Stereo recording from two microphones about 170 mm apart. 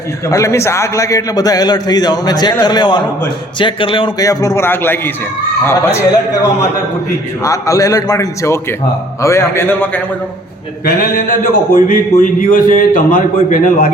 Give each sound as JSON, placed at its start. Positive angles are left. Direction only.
{"t": 0.3, "sound": "a man's voice", "side_deg": 20}
{"t": 7.4, "sound": "a man's voice", "side_deg": 20}
{"t": 10.8, "sound": "a sound", "side_deg": 60}
{"t": 12.4, "sound": "a man's voice", "side_deg": 55}